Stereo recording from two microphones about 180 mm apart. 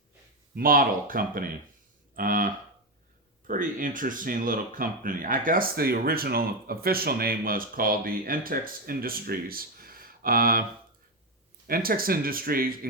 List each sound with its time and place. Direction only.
0.5 s speech: 55° right (ahead or behind)
11.7 s speech: 55° right (ahead or behind)